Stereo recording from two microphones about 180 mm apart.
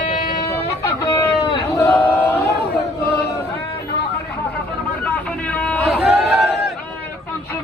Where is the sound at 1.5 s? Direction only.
15° left (ahead or behind).